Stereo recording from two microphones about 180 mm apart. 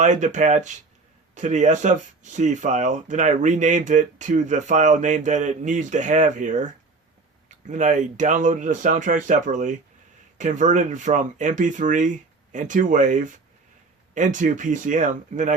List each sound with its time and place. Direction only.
0.0 s speech: 45° right (ahead or behind)